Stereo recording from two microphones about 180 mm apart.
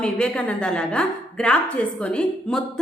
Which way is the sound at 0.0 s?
5° left (ahead or behind).